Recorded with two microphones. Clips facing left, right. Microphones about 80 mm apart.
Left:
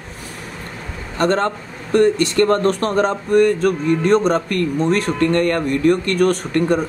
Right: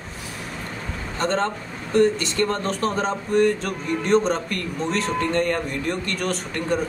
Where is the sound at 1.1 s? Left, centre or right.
Left.